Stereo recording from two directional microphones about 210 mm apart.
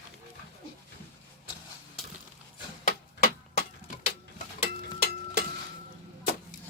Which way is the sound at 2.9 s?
40° left (ahead or behind).